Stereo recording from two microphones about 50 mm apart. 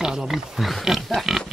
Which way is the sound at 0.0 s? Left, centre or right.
Centre.